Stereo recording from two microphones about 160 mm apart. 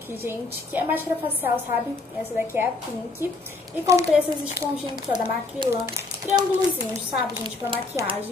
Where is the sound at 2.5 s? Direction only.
15° right (ahead or behind).